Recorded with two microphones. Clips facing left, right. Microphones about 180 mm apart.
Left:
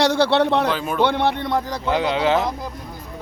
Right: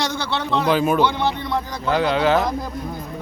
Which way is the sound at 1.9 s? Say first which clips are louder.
Right 2 dB; 20° left (ahead or behind).